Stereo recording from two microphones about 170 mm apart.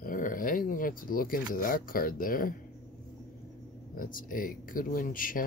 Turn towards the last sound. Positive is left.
turn(degrees=55)  # may be behind; listen again after turning